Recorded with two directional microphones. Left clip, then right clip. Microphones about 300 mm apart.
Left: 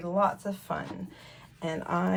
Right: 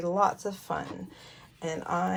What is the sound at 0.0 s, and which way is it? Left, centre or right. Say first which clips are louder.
Speech: right 1 dB; right.